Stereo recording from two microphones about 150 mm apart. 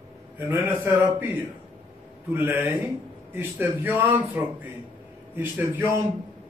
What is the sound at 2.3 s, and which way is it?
A man's voice, 15° right (ahead or behind).